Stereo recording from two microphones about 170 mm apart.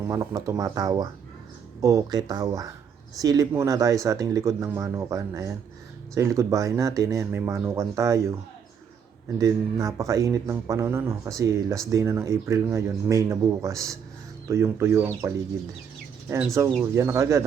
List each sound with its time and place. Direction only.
0.0 s speech: 20° right (ahead or behind)
9.4 s speech: 20° right (ahead or behind)
16.6 s speech: 15° right (ahead or behind)